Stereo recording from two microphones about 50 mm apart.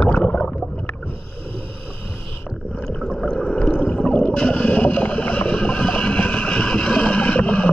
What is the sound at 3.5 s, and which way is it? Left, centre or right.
Whale vocalization, left.